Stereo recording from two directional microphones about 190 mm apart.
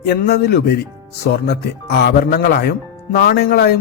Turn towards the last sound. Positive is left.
turn(degrees=55)  # may be behind; listen again after turning